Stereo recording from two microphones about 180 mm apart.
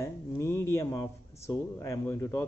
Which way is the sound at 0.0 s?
15° left (ahead or behind).